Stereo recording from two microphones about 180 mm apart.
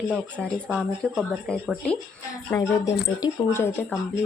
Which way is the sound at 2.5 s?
20° left (ahead or behind).